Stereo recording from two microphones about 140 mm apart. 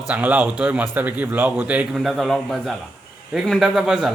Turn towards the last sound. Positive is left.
turn(degrees=0)  # may be behind; listen again after turning